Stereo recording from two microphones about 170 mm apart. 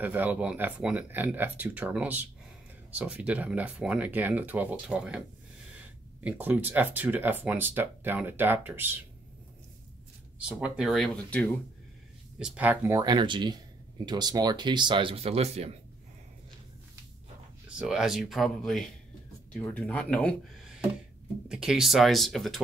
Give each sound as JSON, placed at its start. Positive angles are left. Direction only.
{"t": 0.0, "sound": "speech", "side_deg": -10}
{"t": 6.2, "sound": "speech", "side_deg": -10}
{"t": 10.6, "sound": "speech", "side_deg": 0}
{"t": 12.4, "sound": "speech", "side_deg": -5}
{"t": 17.7, "sound": "speech", "side_deg": -5}